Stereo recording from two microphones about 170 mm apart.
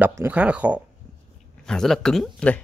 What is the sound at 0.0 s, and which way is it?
Speech, 10° right (ahead or behind).